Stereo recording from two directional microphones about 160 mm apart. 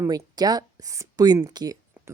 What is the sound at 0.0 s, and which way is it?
Speech, 25° right (ahead or behind).